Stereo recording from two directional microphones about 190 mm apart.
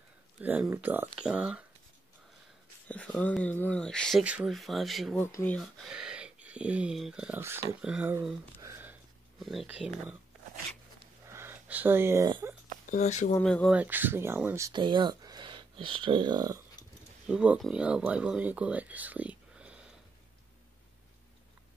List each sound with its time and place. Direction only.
0.4 s speech: 10° right (ahead or behind)
2.9 s speech: 5° left (ahead or behind)
4.2 s speech: 5° right (ahead or behind)
5.2 s speech: 10° left (ahead or behind)
5.9 s speech: 5° right (ahead or behind)
8.5 s a sound: 15° right (ahead or behind)
9.4 s speech: centre (ahead or behind)
11.3 s a sound: 10° right (ahead or behind)
12.9 s speech: 40° left (ahead or behind)
13.4 s speech: 5° left (ahead or behind)
13.7 s speech: 10° right (ahead or behind)
14.7 s speech: 25° right (ahead or behind)
17.3 s speech: 5° right (ahead or behind)